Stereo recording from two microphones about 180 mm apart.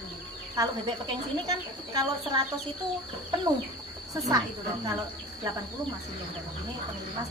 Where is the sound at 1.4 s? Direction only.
20° right (ahead or behind).